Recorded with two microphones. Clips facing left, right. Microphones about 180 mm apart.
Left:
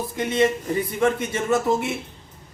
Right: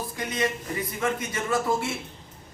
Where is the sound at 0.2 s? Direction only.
25° left (ahead or behind).